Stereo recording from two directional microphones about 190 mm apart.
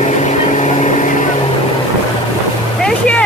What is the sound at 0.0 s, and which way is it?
Vehicle, 40° left (ahead or behind).